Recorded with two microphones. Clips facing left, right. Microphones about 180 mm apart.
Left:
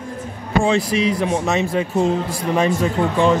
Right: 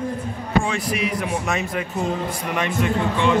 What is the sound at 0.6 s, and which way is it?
Speech, 25° left (ahead or behind).